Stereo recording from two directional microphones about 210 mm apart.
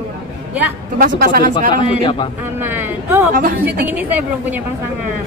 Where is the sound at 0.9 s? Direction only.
40° right (ahead or behind).